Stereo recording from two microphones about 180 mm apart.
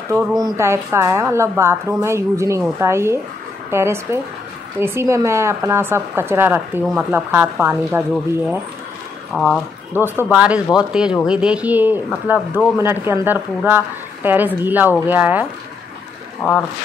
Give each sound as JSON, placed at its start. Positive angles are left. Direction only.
{"t": 0.4, "sound": "speech", "side_deg": -15}
{"t": 9.3, "sound": "speech", "side_deg": 0}
{"t": 9.9, "sound": "speech", "side_deg": -10}
{"t": 16.4, "sound": "speech", "side_deg": -5}